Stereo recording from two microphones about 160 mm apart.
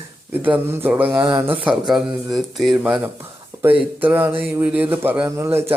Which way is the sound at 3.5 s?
20° right (ahead or behind).